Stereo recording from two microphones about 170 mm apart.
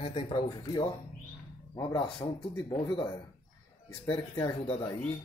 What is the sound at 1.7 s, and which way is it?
Speech, 25° left (ahead or behind).